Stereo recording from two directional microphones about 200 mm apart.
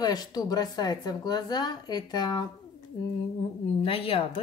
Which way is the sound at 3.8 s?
30° left (ahead or behind).